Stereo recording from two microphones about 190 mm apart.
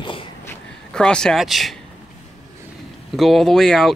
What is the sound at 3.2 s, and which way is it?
Speech, centre (ahead or behind).